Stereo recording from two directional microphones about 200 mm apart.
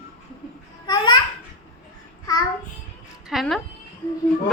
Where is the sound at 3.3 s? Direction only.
Centre (ahead or behind).